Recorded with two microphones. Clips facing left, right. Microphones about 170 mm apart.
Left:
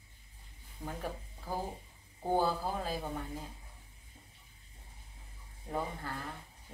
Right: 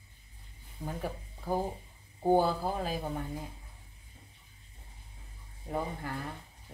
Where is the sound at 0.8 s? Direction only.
15° right (ahead or behind).